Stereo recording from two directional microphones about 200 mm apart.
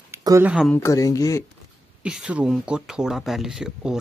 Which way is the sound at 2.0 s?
5° right (ahead or behind).